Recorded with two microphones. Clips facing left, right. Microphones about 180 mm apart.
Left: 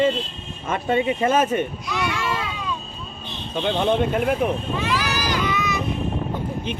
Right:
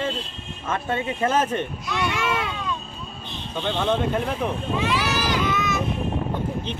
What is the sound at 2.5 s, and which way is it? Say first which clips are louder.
Vehicle: even; 5° left (ahead or behind).